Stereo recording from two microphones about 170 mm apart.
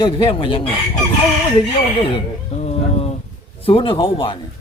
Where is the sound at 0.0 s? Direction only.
30° left (ahead or behind).